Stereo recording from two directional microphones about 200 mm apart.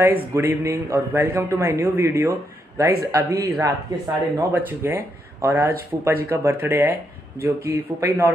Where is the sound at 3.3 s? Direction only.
50° right (ahead or behind).